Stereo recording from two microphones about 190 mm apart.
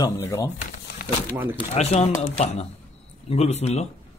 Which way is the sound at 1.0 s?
50° left (ahead or behind).